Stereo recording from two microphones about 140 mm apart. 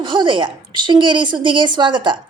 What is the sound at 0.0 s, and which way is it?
Speech, 35° right (ahead or behind).